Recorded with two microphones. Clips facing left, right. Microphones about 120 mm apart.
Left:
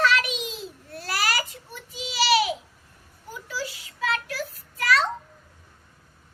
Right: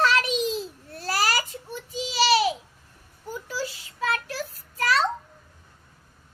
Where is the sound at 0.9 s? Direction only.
35° right (ahead or behind).